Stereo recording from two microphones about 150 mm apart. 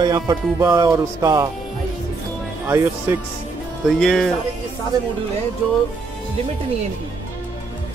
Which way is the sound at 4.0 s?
5° left (ahead or behind).